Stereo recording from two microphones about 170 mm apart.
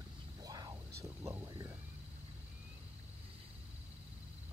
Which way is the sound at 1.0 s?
15° right (ahead or behind).